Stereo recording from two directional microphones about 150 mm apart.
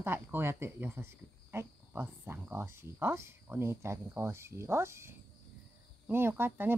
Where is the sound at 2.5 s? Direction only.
15° right (ahead or behind).